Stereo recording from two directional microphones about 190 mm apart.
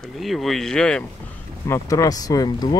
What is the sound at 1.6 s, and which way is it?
Speech, 15° left (ahead or behind).